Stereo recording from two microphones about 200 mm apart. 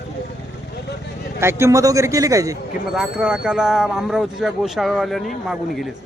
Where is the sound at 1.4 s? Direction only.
15° right (ahead or behind).